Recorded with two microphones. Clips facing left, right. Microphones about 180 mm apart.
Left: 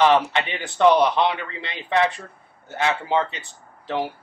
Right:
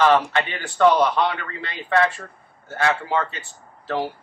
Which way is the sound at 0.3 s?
20° left (ahead or behind).